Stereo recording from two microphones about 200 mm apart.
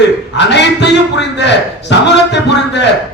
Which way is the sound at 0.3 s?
60° left (ahead or behind).